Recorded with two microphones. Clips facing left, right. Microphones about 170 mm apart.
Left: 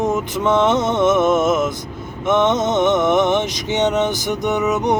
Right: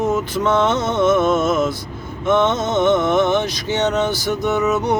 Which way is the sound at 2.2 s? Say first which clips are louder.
Left 1 dB; 20° left (ahead or behind).